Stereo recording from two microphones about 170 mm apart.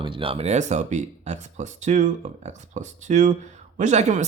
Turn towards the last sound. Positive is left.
turn(degrees=-45)  # may be behind; listen again after turning